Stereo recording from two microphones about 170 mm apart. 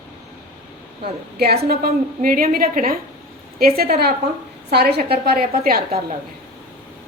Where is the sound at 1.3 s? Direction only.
65° right (ahead or behind).